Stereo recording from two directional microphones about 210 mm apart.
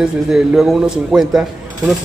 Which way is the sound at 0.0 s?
Centre (ahead or behind).